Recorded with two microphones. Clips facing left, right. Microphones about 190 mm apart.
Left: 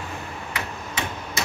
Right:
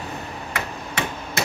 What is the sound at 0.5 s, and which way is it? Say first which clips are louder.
Tick-tock: right 3 dB; 60° right (ahead or behind).